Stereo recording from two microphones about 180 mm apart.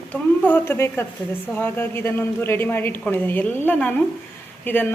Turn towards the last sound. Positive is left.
turn(degrees=10)  # may be behind; listen again after turning